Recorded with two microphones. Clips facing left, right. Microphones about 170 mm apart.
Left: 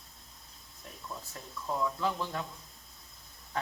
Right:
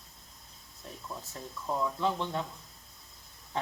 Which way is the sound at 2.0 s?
25° right (ahead or behind).